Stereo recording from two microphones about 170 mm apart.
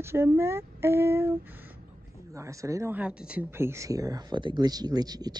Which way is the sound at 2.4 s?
20° right (ahead or behind).